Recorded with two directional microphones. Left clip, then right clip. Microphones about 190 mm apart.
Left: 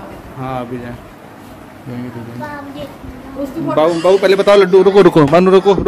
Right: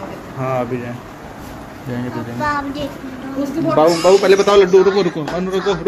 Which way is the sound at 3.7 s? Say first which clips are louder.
Even; 30° left (ahead or behind).